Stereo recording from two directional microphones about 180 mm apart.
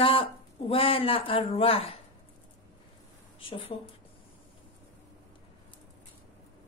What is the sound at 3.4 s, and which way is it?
Speech, 30° left (ahead or behind).